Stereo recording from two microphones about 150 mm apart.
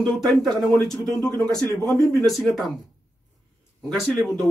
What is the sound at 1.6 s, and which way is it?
Speech, 20° left (ahead or behind).